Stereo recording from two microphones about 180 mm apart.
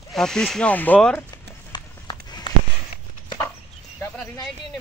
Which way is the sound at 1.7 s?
25° left (ahead or behind).